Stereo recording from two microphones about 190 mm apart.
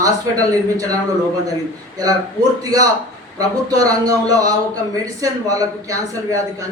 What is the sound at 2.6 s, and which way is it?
A man's voice, 20° right (ahead or behind).